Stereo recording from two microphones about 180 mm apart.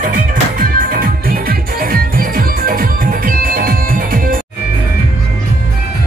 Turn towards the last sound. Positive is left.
turn(degrees=-50)  # may be behind; listen again after turning